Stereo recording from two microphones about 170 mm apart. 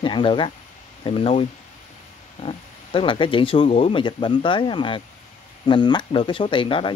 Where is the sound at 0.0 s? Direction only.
30° left (ahead or behind).